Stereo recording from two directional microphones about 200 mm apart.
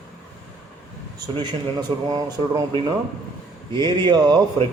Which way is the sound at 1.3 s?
20° right (ahead or behind).